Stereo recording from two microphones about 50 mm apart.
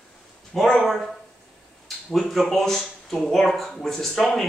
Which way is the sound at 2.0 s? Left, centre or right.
Centre.